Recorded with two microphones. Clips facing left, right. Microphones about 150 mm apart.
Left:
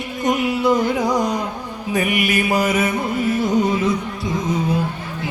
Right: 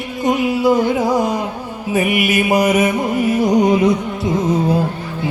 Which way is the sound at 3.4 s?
50° right (ahead or behind).